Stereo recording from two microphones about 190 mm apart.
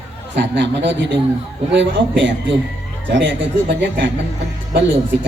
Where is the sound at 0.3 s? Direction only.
65° right (ahead or behind).